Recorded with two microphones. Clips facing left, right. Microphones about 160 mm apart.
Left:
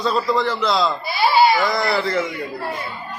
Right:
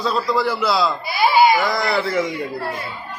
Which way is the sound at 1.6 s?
Centre (ahead or behind).